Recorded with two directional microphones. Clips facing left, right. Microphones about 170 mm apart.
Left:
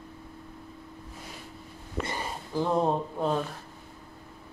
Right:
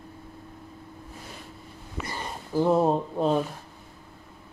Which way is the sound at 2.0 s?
Centre (ahead or behind).